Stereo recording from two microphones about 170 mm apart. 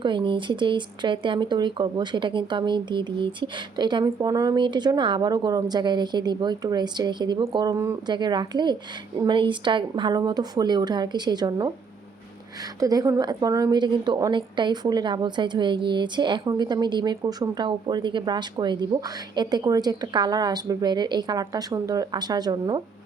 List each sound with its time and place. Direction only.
0.0 s a woman's voice: 30° right (ahead or behind)
12.8 s a woman's voice: 20° right (ahead or behind)